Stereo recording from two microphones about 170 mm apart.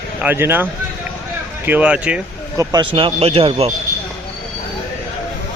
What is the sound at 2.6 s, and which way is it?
A man's voice, 25° right (ahead or behind).